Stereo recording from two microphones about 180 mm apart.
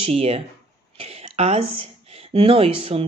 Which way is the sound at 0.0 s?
35° right (ahead or behind).